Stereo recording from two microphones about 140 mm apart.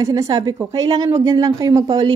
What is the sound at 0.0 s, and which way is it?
A woman's voice, 25° right (ahead or behind).